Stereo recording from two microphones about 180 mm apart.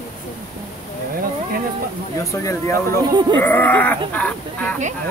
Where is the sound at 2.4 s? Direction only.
15° left (ahead or behind).